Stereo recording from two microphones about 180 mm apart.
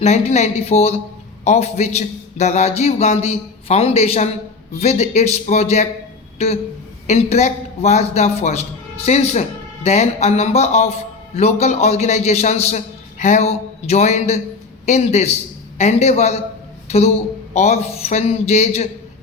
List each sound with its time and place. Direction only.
0.0 s a man's voice: 40° left (ahead or behind)
17.5 s a man's voice: 35° left (ahead or behind)